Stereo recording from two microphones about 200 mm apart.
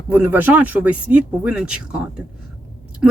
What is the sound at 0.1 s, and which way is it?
Speech, 10° right (ahead or behind).